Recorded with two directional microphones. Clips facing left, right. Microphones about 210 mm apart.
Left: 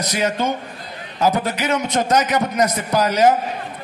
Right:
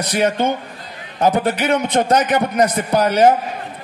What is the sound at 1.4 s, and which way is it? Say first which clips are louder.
Speech: right 4 dB; 55° right (ahead or behind).